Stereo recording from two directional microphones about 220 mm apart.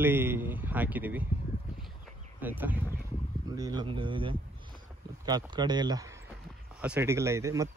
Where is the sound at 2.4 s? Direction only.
10° right (ahead or behind).